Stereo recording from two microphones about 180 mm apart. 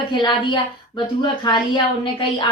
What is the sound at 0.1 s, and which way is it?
A woman's voice, 25° left (ahead or behind).